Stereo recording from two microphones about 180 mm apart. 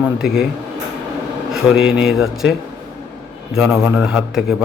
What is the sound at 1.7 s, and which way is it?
A man's voice, 5° right (ahead or behind).